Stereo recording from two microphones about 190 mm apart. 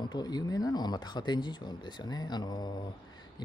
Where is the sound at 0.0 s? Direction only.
20° left (ahead or behind).